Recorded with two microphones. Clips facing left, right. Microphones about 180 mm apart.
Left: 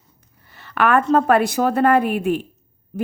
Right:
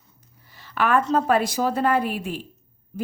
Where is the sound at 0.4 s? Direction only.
60° left (ahead or behind).